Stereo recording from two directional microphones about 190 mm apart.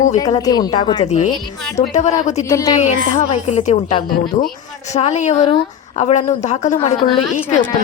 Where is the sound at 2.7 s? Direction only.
35° left (ahead or behind).